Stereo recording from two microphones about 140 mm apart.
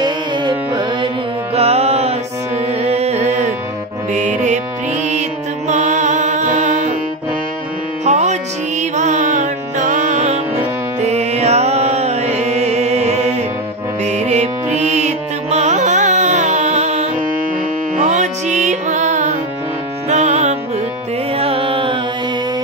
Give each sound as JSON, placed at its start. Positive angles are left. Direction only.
{"t": 0.0, "sound": "music", "side_deg": -30}
{"t": 1.5, "sound": "music", "side_deg": -45}
{"t": 5.7, "sound": "music", "side_deg": -60}
{"t": 8.0, "sound": "music", "side_deg": -55}
{"t": 21.4, "sound": "music", "side_deg": -40}